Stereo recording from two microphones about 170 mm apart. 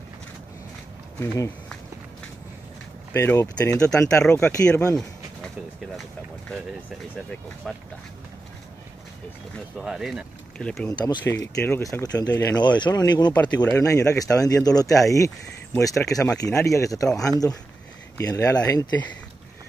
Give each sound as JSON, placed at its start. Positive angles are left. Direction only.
{"t": 1.2, "sound": "speech", "side_deg": 20}
{"t": 3.1, "sound": "speech", "side_deg": 15}
{"t": 4.2, "sound": "speech", "side_deg": 5}
{"t": 7.2, "sound": "speech", "side_deg": 5}
{"t": 9.8, "sound": "speech", "side_deg": 0}
{"t": 10.9, "sound": "speech", "side_deg": 20}
{"t": 13.3, "sound": "speech", "side_deg": 10}
{"t": 13.7, "sound": "speech", "side_deg": 20}